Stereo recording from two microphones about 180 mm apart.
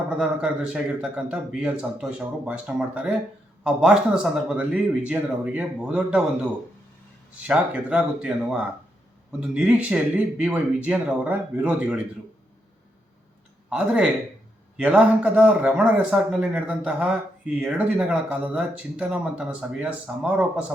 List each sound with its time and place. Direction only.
0.2 s a man's voice: 5° right (ahead or behind)
13.7 s a man's voice: 5° right (ahead or behind)